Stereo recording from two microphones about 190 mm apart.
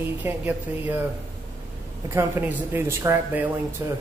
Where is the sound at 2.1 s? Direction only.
10° right (ahead or behind).